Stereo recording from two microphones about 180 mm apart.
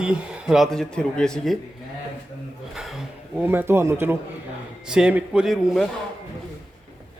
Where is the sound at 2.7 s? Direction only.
Centre (ahead or behind).